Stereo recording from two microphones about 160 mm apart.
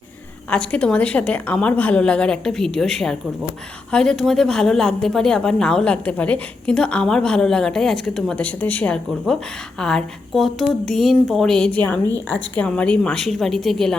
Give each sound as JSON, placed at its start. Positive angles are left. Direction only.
{"t": 0.5, "sound": "a woman's voice", "side_deg": 5}